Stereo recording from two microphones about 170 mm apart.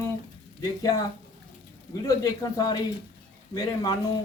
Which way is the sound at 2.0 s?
20° left (ahead or behind).